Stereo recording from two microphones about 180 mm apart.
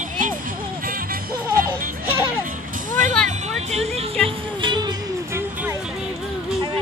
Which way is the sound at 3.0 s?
45° right (ahead or behind).